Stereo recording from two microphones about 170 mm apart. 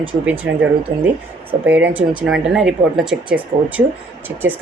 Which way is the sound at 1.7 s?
10° right (ahead or behind).